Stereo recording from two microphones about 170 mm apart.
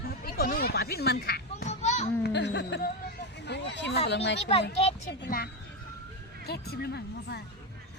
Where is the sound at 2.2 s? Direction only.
90° left.